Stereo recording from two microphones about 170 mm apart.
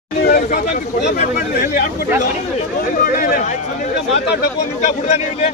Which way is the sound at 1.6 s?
60° left (ahead or behind).